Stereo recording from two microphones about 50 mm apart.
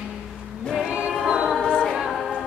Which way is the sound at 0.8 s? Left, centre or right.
Right.